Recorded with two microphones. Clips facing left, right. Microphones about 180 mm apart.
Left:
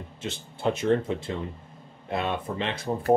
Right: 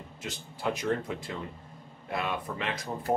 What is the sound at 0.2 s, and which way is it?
Speech, 25° left (ahead or behind).